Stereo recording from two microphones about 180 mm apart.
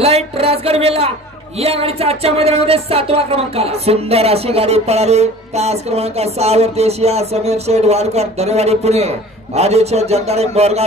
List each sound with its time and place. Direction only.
0.0 s speech: 35° right (ahead or behind)